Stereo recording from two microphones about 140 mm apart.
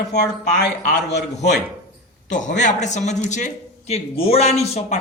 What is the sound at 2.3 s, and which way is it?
A man's voice, 60° left (ahead or behind).